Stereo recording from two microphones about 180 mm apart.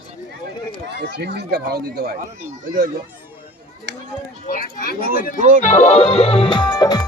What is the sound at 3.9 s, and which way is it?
Speech, 70° right (ahead or behind).